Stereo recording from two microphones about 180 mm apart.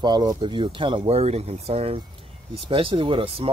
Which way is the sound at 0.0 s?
25° right (ahead or behind).